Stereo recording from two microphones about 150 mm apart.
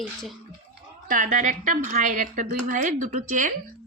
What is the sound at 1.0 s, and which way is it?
A woman's voice, 60° right (ahead or behind).